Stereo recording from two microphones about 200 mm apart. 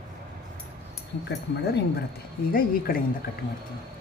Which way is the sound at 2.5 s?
45° left (ahead or behind).